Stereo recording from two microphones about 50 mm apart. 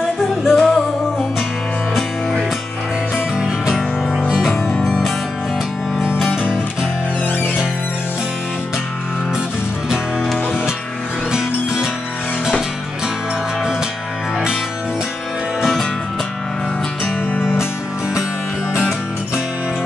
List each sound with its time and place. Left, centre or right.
0.4 s music: centre
3.3 s music: centre
4.3 s music: centre
11.3 s music: centre
18.8 s music: centre